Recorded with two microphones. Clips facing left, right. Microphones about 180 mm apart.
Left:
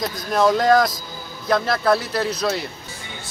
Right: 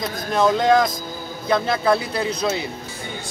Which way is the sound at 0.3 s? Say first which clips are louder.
Left 1 dB; centre (ahead or behind).